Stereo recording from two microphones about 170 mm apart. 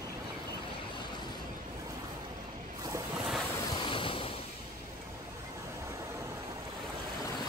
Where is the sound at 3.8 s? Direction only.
30° left (ahead or behind).